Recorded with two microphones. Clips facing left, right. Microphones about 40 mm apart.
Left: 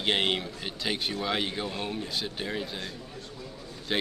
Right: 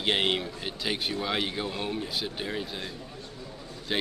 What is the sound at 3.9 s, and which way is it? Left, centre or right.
Speech, centre.